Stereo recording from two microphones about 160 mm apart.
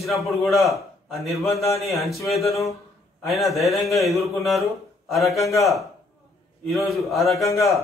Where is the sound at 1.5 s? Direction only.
20° left (ahead or behind).